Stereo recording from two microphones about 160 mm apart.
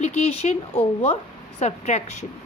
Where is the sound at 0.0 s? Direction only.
45° left (ahead or behind).